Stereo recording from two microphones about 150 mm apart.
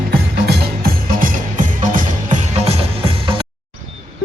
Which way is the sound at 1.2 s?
60° right (ahead or behind).